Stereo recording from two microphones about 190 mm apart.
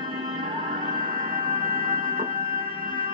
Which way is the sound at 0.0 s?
25° right (ahead or behind).